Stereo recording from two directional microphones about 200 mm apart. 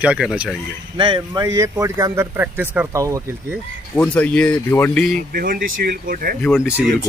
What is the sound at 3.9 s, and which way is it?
Speech, 5° left (ahead or behind).